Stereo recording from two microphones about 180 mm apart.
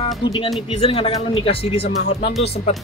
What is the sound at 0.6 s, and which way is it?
Speech, 30° left (ahead or behind).